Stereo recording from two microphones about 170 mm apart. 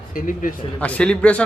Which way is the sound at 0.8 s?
5° left (ahead or behind).